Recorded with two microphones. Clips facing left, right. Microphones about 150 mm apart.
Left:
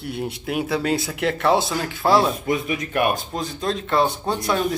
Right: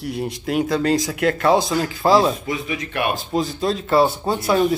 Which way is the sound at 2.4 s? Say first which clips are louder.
Left 2 dB; 50° left (ahead or behind).